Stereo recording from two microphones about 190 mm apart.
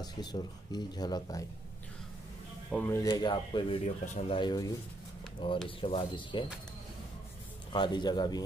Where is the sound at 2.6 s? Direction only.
10° left (ahead or behind); by 6.5 s 25° left (ahead or behind).